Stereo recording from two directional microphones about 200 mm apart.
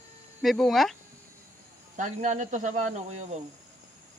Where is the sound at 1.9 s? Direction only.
40° right (ahead or behind).